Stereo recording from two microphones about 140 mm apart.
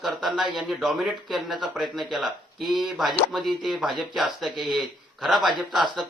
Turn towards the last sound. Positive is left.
turn(degrees=0)  # may be behind; listen again after turning